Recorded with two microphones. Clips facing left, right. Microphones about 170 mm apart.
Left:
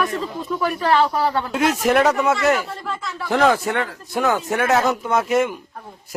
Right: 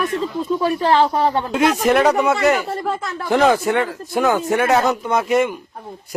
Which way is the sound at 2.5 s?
45° right (ahead or behind).